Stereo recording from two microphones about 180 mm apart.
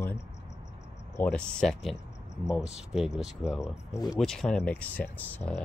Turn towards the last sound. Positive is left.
turn(degrees=10)  # may be behind; listen again after turning